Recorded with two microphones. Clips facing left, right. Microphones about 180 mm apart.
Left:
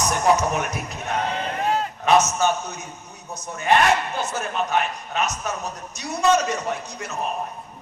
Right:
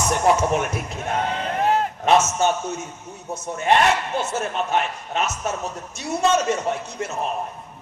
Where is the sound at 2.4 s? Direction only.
25° right (ahead or behind).